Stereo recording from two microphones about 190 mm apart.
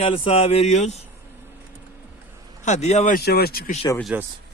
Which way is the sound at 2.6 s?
40° left (ahead or behind).